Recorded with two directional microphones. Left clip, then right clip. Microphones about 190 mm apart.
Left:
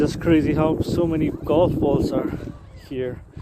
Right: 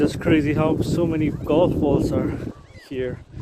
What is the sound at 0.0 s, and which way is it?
Speech, 10° right (ahead or behind).